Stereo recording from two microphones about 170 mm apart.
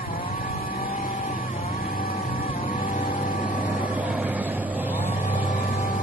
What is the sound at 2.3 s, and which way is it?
Music, 55° left (ahead or behind).